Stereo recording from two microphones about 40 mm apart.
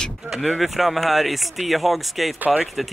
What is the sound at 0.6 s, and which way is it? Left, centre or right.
Speech, centre.